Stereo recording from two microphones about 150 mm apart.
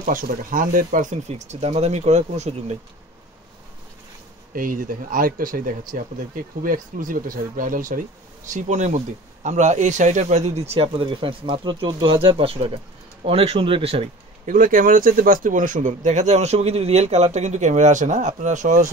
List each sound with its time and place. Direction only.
0.0 s speech: 65° right (ahead or behind)
1.3 s speech: 45° right (ahead or behind)
4.6 s speech: 65° right (ahead or behind)
8.5 s speech: 50° right (ahead or behind); by 14.0 s 35° right (ahead or behind)
14.4 s speech: 60° right (ahead or behind)